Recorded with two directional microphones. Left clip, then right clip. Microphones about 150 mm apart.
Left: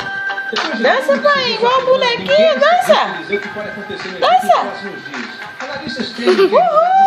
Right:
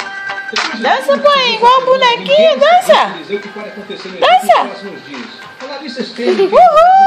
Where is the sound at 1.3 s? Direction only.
20° right (ahead or behind).